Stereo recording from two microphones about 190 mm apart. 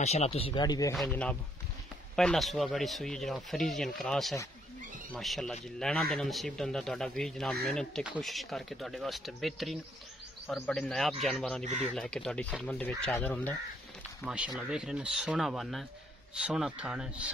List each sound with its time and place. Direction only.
0.0 s speech: 35° left (ahead or behind); by 0.9 s 20° left (ahead or behind)
0.9 s speech: 5° left (ahead or behind)
14.2 s speech: 5° right (ahead or behind)